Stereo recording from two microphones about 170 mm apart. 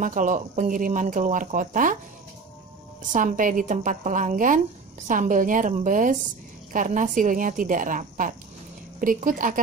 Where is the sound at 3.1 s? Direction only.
50° right (ahead or behind).